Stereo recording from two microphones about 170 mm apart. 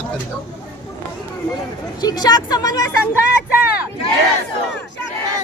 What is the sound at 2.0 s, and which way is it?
Speech, 25° left (ahead or behind).